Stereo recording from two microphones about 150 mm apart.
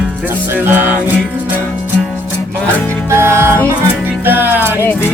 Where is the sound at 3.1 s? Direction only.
15° right (ahead or behind).